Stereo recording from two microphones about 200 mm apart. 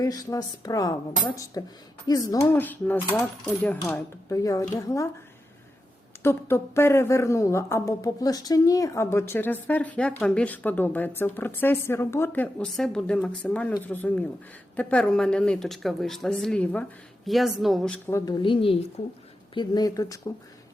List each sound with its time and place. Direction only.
0.0 s a woman's voice: 15° left (ahead or behind)
6.2 s a woman's voice: 10° left (ahead or behind)
18.4 s a woman's voice: 25° left (ahead or behind)